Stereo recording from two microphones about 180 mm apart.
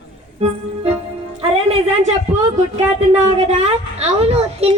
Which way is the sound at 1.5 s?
35° right (ahead or behind).